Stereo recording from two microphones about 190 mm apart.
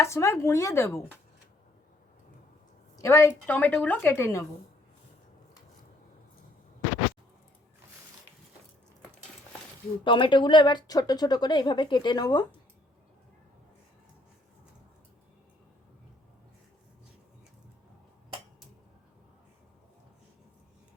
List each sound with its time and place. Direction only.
0.0 s a woman's voice: 15° left (ahead or behind)
3.0 s a woman's voice: 15° left (ahead or behind)
10.0 s speech: 25° left (ahead or behind)